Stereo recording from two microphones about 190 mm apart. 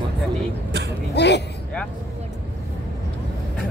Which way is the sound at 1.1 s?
65° left (ahead or behind).